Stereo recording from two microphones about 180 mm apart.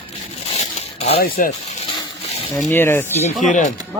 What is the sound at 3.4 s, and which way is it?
Speech, 45° left (ahead or behind).